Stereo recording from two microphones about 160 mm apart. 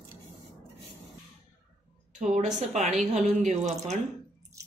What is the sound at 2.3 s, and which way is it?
A woman's voice, 45° right (ahead or behind).